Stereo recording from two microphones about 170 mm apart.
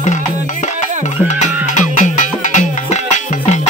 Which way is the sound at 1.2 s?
45° left (ahead or behind).